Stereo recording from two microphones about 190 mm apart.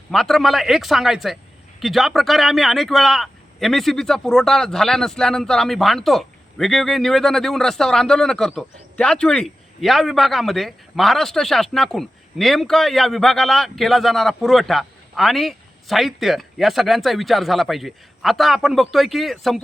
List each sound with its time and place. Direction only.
0.1 s speech: centre (ahead or behind)